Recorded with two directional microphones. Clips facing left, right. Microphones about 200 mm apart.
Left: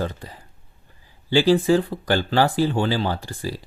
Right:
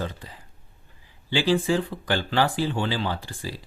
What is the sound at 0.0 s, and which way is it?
Speech, 45° left (ahead or behind).